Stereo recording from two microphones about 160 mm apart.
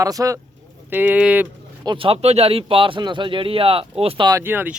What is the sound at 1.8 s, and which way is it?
Speech, 30° right (ahead or behind).